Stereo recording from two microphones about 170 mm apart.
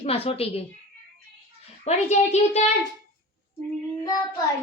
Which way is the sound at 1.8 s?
40° left (ahead or behind).